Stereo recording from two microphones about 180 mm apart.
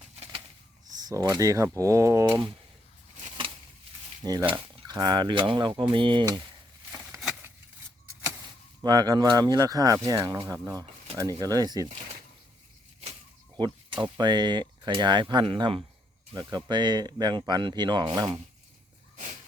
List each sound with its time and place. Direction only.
0.9 s speech: 20° right (ahead or behind)
4.2 s speech: 20° right (ahead or behind)
7.2 s a sound: 5° right (ahead or behind)
8.8 s speech: 20° right (ahead or behind)
13.6 s speech: 25° right (ahead or behind)
19.1 s a sound: 40° right (ahead or behind)